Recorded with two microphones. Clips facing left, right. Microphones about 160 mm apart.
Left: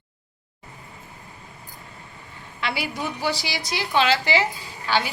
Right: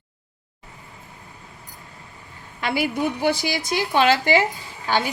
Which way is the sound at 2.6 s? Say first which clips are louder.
Right 5 dB; 50° right (ahead or behind).